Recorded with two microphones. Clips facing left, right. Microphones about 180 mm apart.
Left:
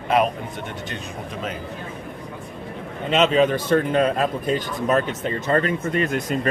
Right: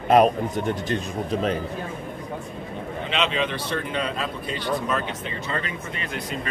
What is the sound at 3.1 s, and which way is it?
Speech, 45° left (ahead or behind).